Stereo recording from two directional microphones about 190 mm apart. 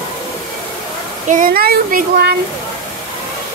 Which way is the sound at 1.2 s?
45° right (ahead or behind).